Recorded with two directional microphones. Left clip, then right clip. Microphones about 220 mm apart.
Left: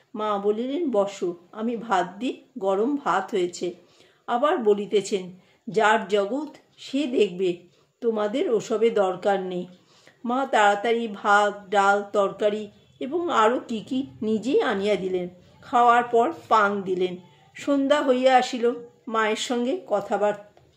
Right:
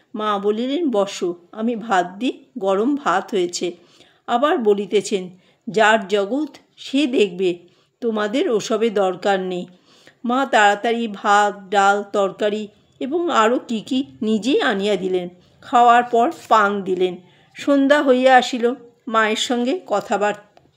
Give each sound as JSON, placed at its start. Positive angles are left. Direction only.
{"t": 0.1, "sound": "speech", "side_deg": -40}